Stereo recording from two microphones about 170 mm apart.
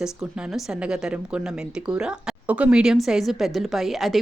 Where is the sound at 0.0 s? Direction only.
5° right (ahead or behind).